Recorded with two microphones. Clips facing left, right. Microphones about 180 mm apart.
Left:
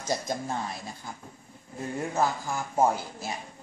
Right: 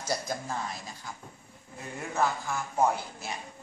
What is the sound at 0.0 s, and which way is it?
Speech, 20° left (ahead or behind).